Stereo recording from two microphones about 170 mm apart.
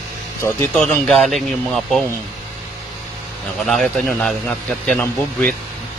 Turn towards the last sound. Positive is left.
turn(degrees=5)  # may be behind; listen again after turning